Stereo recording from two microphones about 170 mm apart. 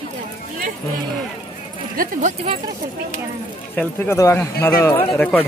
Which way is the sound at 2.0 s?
55° right (ahead or behind).